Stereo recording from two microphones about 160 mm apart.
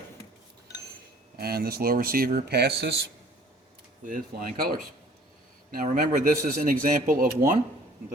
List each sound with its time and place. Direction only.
1.4 s speech: 75° right (ahead or behind); by 2.9 s 90° right
4.0 s a man's voice: 60° right (ahead or behind)
5.7 s a man's voice: 55° right (ahead or behind)